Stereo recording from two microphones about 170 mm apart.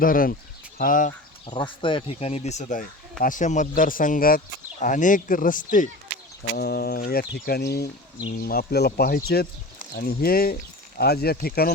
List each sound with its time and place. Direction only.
0.0 s speech: 55° left (ahead or behind)
1.5 s speech: 30° left (ahead or behind); by 5.9 s 50° left (ahead or behind)
6.6 s speech: 65° left (ahead or behind)